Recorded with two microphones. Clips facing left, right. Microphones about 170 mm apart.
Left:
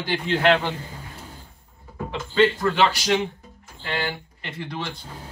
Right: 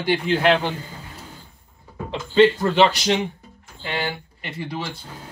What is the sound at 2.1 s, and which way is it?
A man's voice, 20° right (ahead or behind).